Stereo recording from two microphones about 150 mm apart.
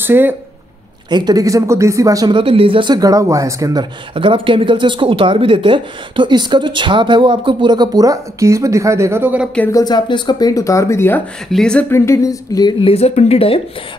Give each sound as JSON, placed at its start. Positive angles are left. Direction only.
{"t": 0.0, "sound": "speech", "side_deg": -15}
{"t": 1.1, "sound": "speech", "side_deg": -25}
{"t": 4.1, "sound": "speech", "side_deg": -35}
{"t": 9.7, "sound": "speech", "side_deg": 25}
{"t": 11.4, "sound": "speech", "side_deg": 5}
{"t": 11.9, "sound": "speech", "side_deg": 20}
{"t": 12.8, "sound": "speech", "side_deg": 40}